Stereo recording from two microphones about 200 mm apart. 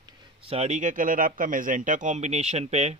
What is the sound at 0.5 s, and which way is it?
A man's voice, 35° right (ahead or behind).